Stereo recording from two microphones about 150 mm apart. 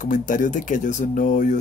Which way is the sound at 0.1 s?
60° left (ahead or behind).